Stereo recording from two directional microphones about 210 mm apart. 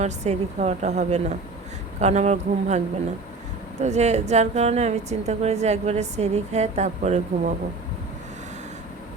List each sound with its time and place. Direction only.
0.0 s a woman's voice: 30° right (ahead or behind)